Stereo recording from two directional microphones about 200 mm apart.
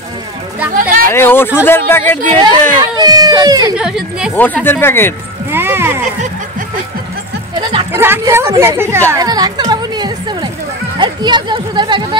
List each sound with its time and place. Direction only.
0.7 s speech: 45° right (ahead or behind)
1.1 s speech: 10° left (ahead or behind)
2.3 s speech: 20° right (ahead or behind)
3.7 s speech: 5° right (ahead or behind)
4.4 s speech: 10° left (ahead or behind)
5.5 s cat: 10° right (ahead or behind)
7.9 s speech: 10° right (ahead or behind)
9.1 s music: 20° right (ahead or behind)
11.0 s speech: 20° right (ahead or behind)